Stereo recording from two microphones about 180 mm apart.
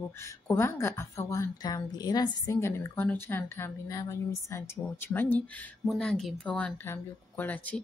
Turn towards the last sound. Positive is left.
turn(degrees=10)  # may be behind; listen again after turning